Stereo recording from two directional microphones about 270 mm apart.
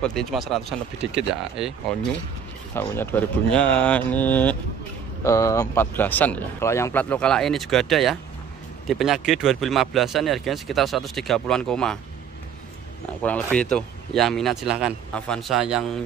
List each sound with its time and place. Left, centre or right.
0.0 s speech: centre
13.2 s speech: centre